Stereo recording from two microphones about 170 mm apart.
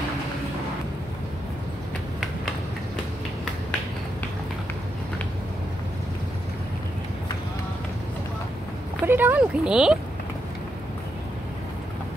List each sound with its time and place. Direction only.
9.0 s speech: 10° right (ahead or behind)